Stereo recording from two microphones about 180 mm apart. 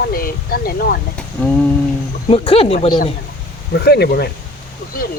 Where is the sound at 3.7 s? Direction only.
65° left (ahead or behind).